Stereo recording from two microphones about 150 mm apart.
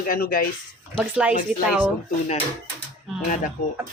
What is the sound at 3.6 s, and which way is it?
Speech, 65° left (ahead or behind).